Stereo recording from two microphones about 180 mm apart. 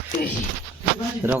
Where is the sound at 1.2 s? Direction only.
15° right (ahead or behind).